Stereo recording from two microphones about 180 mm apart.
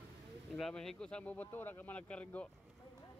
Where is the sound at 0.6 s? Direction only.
Centre (ahead or behind).